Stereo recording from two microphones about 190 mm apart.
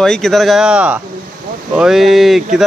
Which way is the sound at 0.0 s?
Centre (ahead or behind).